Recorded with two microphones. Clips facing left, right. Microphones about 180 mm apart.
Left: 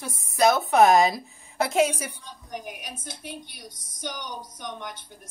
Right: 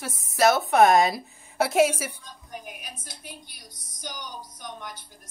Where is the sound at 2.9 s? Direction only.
25° left (ahead or behind).